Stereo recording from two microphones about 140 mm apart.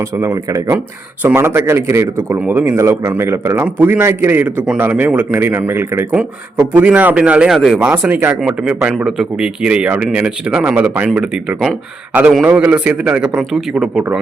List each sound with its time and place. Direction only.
0.2 s speech: 15° right (ahead or behind)